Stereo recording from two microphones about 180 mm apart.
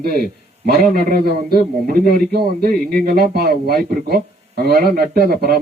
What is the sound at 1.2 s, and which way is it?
A man's voice, 60° right (ahead or behind).